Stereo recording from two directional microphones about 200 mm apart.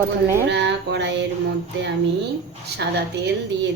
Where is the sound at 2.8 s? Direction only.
55° right (ahead or behind).